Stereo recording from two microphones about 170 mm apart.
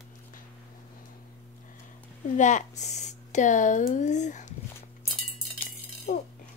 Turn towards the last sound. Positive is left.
turn(degrees=45)  # may be behind; listen again after turning